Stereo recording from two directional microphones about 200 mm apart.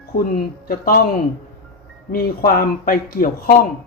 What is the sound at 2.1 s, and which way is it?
Speech, 45° left (ahead or behind).